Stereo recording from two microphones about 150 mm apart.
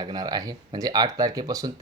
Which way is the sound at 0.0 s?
25° right (ahead or behind).